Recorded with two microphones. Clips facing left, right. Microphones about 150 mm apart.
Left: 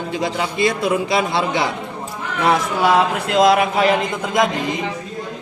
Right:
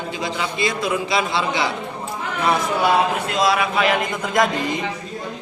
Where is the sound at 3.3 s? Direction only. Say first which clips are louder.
Left 5 dB; 55° left (ahead or behind).